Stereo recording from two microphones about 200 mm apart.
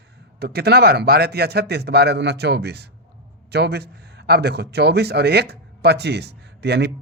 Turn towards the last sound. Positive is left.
turn(degrees=-60)  # may be behind; listen again after turning